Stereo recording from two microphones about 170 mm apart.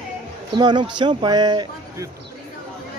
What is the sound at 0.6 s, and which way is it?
Speech, 25° right (ahead or behind).